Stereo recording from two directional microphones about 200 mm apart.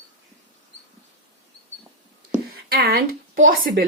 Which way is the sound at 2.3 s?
50° right (ahead or behind).